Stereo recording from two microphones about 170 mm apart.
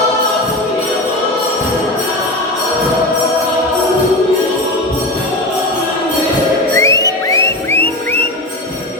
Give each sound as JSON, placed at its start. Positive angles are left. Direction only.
{"t": 6.7, "sound": "music", "side_deg": 20}